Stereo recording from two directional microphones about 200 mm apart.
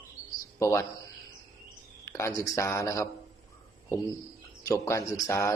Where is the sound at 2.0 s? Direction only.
15° left (ahead or behind).